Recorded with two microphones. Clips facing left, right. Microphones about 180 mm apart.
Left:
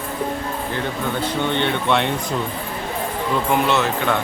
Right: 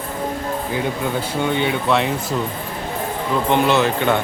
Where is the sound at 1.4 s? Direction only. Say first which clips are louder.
Right 2 dB; 5° right (ahead or behind).